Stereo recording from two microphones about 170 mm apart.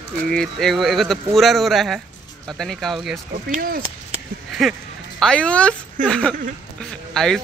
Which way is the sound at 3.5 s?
60° right (ahead or behind).